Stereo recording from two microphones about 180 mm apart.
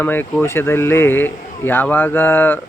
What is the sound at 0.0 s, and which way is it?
Speech, 10° left (ahead or behind).